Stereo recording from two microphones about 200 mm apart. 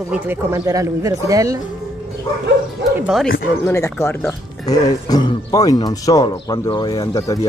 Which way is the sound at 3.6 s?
15° left (ahead or behind).